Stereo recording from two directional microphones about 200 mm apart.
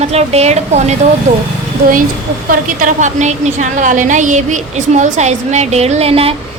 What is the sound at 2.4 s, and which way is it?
A woman's voice, 40° right (ahead or behind).